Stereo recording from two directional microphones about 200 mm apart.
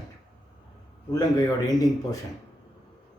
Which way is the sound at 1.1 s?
20° left (ahead or behind).